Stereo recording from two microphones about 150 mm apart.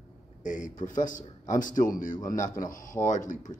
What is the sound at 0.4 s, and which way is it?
Speech, 60° left (ahead or behind).